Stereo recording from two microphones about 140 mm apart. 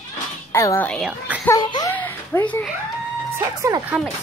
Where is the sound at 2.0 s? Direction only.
10° left (ahead or behind).